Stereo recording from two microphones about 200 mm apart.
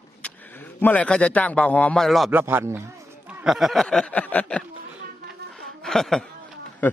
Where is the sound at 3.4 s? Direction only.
Centre (ahead or behind).